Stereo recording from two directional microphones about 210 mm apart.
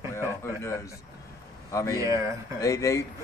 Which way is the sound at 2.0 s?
15° right (ahead or behind).